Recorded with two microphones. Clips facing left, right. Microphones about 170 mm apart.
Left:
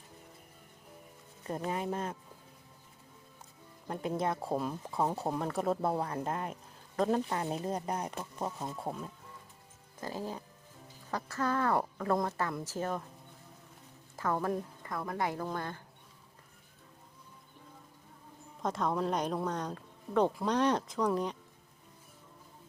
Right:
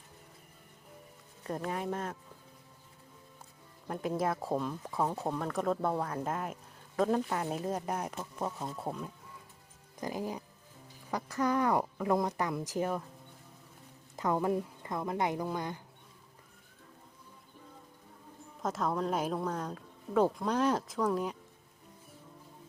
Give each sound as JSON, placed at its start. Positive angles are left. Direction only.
{"t": 1.5, "sound": "speech", "side_deg": 0}
{"t": 3.8, "sound": "speech", "side_deg": 0}
{"t": 10.0, "sound": "speech", "side_deg": -15}
{"t": 14.2, "sound": "a woman's voice", "side_deg": -15}
{"t": 18.6, "sound": "speech", "side_deg": 0}